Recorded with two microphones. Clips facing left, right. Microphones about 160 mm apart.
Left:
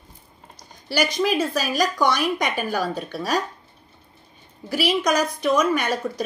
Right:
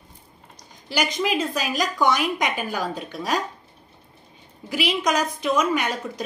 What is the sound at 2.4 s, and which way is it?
Speech, 20° right (ahead or behind).